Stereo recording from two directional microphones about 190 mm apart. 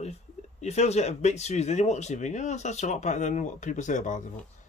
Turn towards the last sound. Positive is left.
turn(degrees=40)  # may be behind; listen again after turning